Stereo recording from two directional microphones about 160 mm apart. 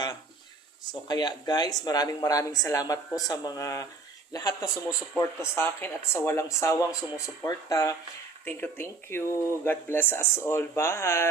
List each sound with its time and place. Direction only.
1.0 s speech: 25° left (ahead or behind)